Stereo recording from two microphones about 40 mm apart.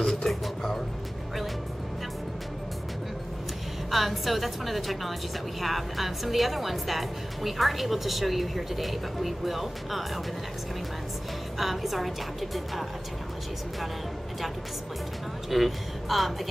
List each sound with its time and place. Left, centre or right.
0.0 s a sound: centre
3.9 s a woman's voice: centre
11.5 s speech: centre
15.5 s speech: centre